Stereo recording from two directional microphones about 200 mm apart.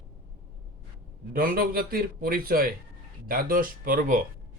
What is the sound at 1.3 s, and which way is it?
A man's voice, 45° right (ahead or behind).